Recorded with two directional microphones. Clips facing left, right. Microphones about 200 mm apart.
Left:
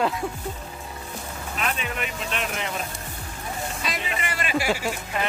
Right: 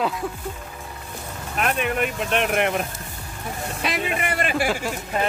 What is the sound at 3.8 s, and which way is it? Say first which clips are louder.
Speech: right 9 dB; 60° right (ahead or behind).